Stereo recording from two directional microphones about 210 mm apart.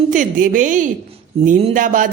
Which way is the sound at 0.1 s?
40° right (ahead or behind).